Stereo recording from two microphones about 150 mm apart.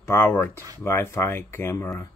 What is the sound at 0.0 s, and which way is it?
Speech, 15° left (ahead or behind).